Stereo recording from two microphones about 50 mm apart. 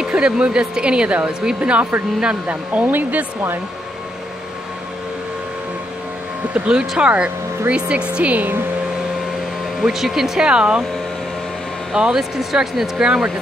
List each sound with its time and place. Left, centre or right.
0.0 s speech: centre; by 3.3 s right
6.5 s speech: right
9.8 s speech: centre
11.9 s speech: centre
13.0 s speech: centre